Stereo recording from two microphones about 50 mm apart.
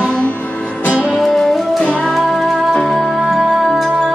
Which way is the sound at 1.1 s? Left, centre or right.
Centre.